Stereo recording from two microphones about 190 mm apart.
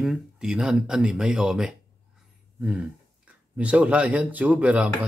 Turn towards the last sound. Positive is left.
turn(degrees=-5)  # may be behind; listen again after turning